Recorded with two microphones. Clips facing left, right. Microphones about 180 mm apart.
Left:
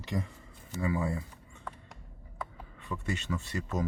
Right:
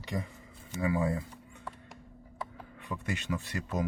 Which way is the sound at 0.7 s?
15° right (ahead or behind).